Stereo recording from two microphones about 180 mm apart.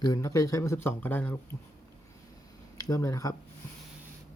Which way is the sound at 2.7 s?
20° left (ahead or behind).